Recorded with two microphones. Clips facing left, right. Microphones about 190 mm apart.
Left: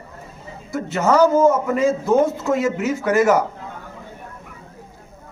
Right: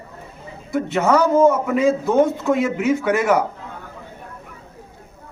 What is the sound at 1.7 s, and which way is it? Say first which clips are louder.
A man's voice: even; 60° right (ahead or behind).